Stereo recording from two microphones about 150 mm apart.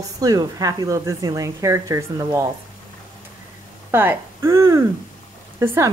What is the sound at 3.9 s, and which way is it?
Speech, 15° right (ahead or behind).